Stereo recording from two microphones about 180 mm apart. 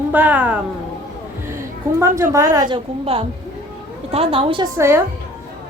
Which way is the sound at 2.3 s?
15° right (ahead or behind).